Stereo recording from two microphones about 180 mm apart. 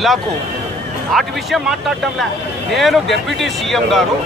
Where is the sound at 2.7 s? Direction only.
Centre (ahead or behind).